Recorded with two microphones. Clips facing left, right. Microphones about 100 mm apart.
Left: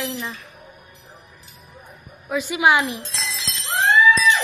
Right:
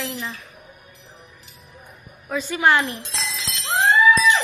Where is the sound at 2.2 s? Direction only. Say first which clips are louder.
Left 1 dB; 10° left (ahead or behind).